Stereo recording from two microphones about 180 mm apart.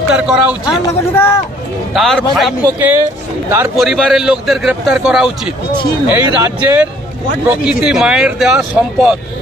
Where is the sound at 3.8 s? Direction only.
Centre (ahead or behind).